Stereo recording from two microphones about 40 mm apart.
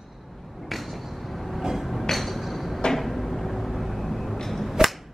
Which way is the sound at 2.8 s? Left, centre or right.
Left.